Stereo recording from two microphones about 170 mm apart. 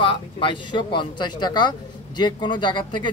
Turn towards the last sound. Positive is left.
turn(degrees=25)  # may be behind; listen again after turning